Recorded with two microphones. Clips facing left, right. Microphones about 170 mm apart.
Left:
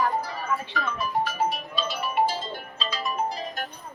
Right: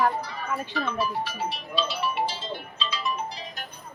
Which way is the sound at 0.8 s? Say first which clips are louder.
Right 1 dB; 50° left (ahead or behind).